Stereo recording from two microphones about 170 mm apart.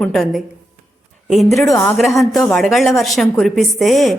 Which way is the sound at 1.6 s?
15° left (ahead or behind).